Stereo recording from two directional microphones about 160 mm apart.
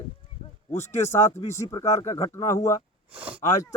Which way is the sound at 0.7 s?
15° left (ahead or behind).